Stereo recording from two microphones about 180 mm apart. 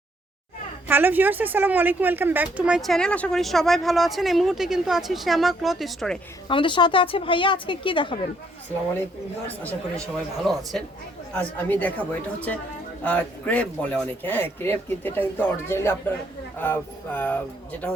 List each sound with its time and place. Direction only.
0.9 s speech: 10° right (ahead or behind)
6.5 s a woman's voice: 25° left (ahead or behind)
10.5 s speech: 5° left (ahead or behind)